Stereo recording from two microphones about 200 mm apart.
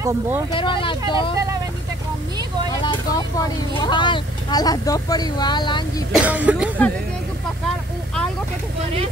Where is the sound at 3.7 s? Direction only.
25° left (ahead or behind).